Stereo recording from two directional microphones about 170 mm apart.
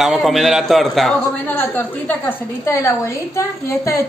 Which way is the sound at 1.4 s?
10° left (ahead or behind).